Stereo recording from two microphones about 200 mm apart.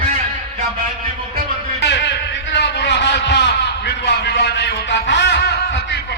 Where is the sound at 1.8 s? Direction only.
55° left (ahead or behind).